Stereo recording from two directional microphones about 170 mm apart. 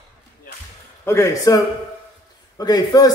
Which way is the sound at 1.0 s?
15° left (ahead or behind).